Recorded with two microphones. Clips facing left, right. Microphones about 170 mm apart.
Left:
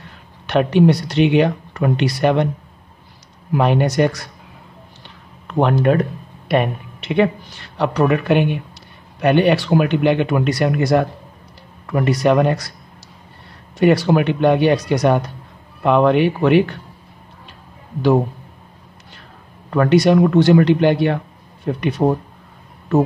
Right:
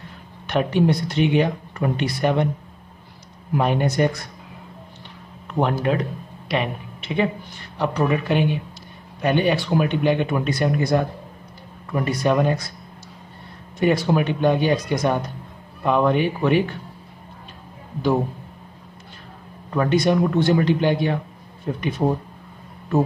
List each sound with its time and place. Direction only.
0.5 s speech: 70° left (ahead or behind)
3.5 s speech: 75° left (ahead or behind)
5.5 s speech: 70° left (ahead or behind)
13.7 s speech: 70° left (ahead or behind)
19.7 s speech: 75° left (ahead or behind)